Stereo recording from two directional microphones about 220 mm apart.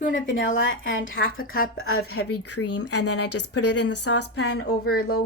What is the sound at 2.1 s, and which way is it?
Speech, 85° left.